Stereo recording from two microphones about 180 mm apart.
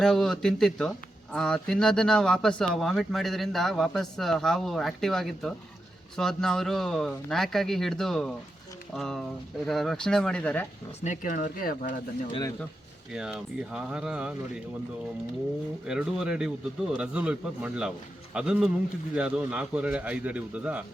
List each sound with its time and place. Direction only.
0.0 s speech: 5° left (ahead or behind)
11.0 s speech: 45° left (ahead or behind)
13.1 s speech: 5° right (ahead or behind)
15.9 s a man's voice: 5° right (ahead or behind)